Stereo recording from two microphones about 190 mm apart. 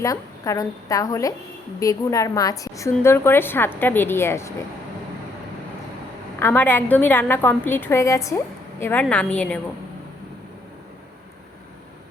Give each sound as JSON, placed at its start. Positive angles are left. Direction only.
{"t": 0.0, "sound": "a woman's voice", "side_deg": 15}
{"t": 6.4, "sound": "a woman's voice", "side_deg": 10}